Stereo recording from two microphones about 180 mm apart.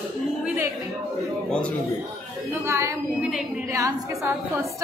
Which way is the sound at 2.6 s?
15° right (ahead or behind).